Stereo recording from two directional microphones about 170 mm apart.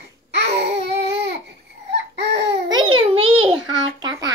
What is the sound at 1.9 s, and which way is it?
Baby cry, 85° right.